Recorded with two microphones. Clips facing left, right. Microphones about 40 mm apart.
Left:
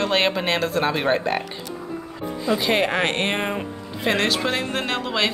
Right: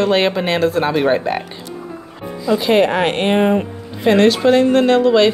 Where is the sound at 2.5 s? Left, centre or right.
Centre.